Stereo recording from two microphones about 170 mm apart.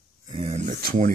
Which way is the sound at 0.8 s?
50° right (ahead or behind).